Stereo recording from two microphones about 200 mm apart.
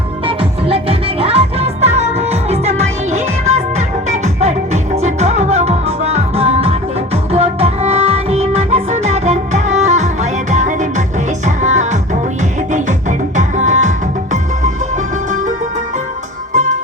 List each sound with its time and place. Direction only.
0.3 s music: 30° right (ahead or behind)